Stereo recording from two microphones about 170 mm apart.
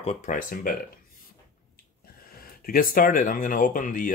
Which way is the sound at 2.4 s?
60° left (ahead or behind).